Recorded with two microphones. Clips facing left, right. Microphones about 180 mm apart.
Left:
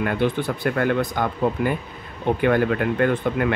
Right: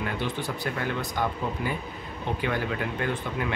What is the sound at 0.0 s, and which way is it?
Speech, 60° left (ahead or behind).